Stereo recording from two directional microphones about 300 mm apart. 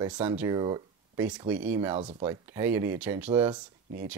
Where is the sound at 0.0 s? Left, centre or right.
Centre.